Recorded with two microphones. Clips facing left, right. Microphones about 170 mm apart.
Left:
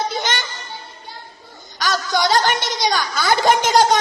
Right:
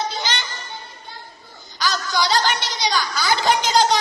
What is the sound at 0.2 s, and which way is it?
Music, 50° left (ahead or behind).